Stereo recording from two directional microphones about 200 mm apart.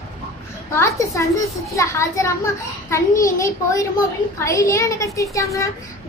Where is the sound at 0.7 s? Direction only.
15° left (ahead or behind).